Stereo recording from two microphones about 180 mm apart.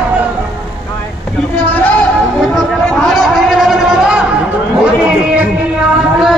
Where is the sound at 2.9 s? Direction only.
5° left (ahead or behind).